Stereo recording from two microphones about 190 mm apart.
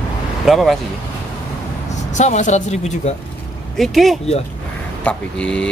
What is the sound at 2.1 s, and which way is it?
Speech, 40° left (ahead or behind).